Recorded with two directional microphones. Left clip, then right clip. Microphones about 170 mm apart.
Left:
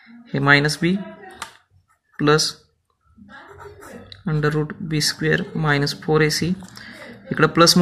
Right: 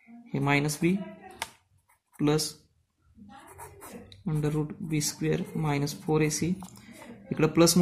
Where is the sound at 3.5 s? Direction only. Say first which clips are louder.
Left 5 dB; 10° right (ahead or behind).